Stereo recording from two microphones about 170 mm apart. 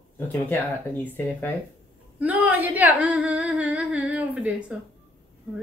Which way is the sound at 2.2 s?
10° right (ahead or behind).